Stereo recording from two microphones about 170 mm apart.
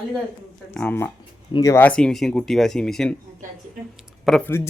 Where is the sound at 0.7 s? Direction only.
10° left (ahead or behind).